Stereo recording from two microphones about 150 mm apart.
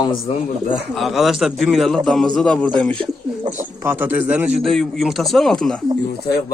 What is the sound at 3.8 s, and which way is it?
A man's voice, 15° right (ahead or behind).